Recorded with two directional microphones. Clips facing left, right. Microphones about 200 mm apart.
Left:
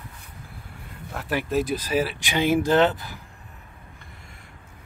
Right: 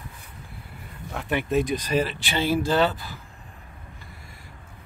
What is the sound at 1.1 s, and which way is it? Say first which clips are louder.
Speech: right 1 dB; centre (ahead or behind).